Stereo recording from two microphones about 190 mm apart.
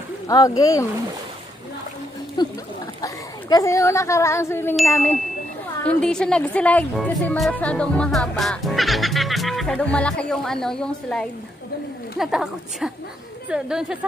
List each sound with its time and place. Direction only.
0.3 s speech: 20° left (ahead or behind)
2.4 s speech: 20° left (ahead or behind)
5.9 s a woman's voice: 5° left (ahead or behind)